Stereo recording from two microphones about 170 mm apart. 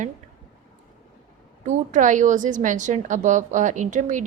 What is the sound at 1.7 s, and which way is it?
A woman's voice, 45° right (ahead or behind).